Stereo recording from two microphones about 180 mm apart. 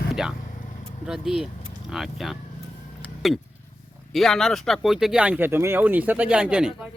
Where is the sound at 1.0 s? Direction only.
Centre (ahead or behind).